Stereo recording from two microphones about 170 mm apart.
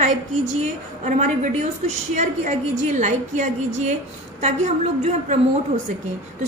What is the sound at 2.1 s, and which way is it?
A woman's voice, 45° right (ahead or behind).